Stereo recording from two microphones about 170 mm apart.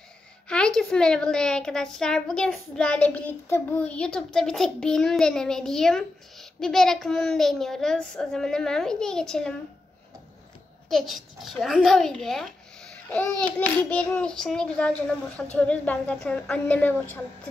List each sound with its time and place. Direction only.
0.5 s a woman's voice: 5° left (ahead or behind)
10.9 s a woman's voice: centre (ahead or behind)